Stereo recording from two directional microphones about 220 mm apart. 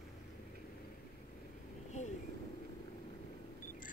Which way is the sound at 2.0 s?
30° left (ahead or behind).